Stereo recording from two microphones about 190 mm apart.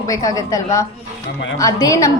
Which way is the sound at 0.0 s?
20° left (ahead or behind).